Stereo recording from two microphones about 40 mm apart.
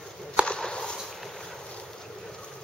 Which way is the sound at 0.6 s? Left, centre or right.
Centre.